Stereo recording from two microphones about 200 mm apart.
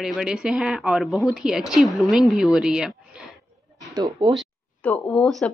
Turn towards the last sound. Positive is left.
turn(degrees=5)  # may be behind; listen again after turning